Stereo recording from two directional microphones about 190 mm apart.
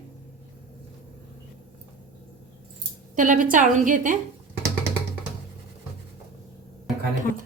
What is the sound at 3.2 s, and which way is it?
A woman's voice, 45° right (ahead or behind).